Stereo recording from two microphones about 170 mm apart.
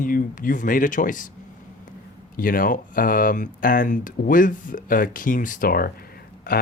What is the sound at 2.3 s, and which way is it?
Speech, 55° left (ahead or behind).